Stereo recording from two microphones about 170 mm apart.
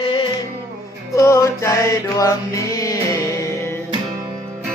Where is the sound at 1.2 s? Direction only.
20° left (ahead or behind).